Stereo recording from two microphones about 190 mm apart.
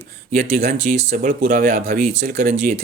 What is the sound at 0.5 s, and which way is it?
Speech, 40° right (ahead or behind).